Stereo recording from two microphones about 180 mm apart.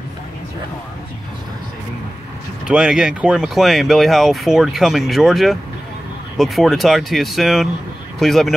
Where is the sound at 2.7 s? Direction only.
5° right (ahead or behind).